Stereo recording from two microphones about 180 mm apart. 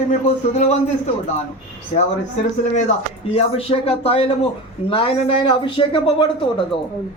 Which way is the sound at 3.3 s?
35° left (ahead or behind).